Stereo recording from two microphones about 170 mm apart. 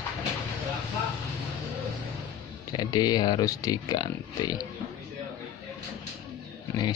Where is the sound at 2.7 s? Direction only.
25° left (ahead or behind).